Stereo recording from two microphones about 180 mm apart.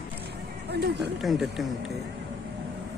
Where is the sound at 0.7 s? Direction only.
65° right (ahead or behind).